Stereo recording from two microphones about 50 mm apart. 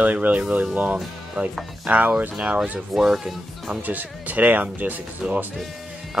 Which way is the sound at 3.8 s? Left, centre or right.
Right.